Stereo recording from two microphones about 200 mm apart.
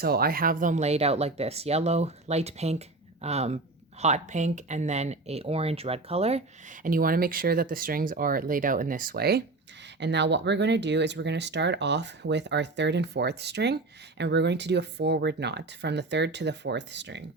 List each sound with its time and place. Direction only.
0.0 s speech: 50° right (ahead or behind)